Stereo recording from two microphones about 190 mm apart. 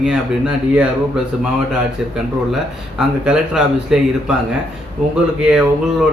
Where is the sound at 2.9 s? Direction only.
5° right (ahead or behind).